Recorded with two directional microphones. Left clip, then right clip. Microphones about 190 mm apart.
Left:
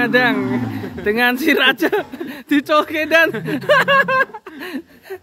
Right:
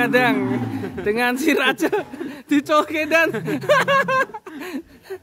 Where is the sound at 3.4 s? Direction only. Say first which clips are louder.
Left 3 dB; 5° left (ahead or behind).